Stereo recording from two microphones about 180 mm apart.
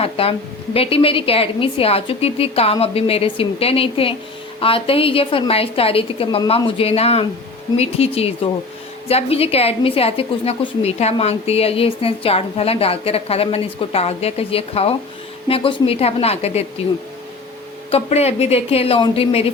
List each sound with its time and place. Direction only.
0.0 s a woman's voice: 30° left (ahead or behind)
17.9 s a woman's voice: 35° left (ahead or behind)